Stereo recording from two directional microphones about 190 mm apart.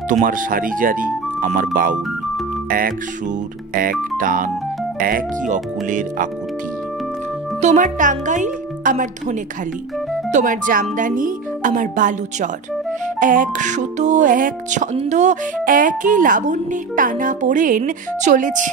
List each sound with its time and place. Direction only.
0.1 s speech: 45° right (ahead or behind)
3.7 s speech: 45° right (ahead or behind)
7.6 s speech: 40° right (ahead or behind)